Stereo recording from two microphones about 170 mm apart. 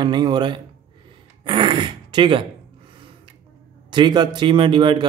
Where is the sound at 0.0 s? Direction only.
25° right (ahead or behind).